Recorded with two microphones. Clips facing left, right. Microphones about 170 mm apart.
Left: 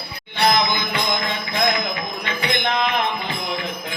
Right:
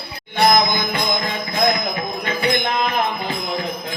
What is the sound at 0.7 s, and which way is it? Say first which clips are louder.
Music: right 2 dB; 45° right (ahead or behind).